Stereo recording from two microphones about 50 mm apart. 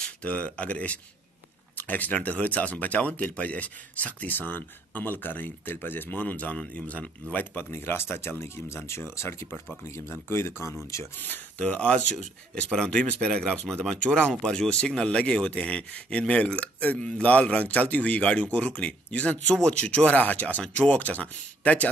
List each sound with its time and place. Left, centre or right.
0.2 s speech: left
7.3 s speech: left
9.8 s speech: left
11.1 s speech: left
11.6 s speech: left